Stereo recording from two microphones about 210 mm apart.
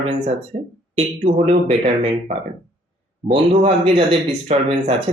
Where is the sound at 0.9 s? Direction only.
30° right (ahead or behind).